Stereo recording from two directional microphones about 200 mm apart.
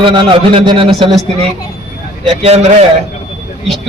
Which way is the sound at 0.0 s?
25° right (ahead or behind).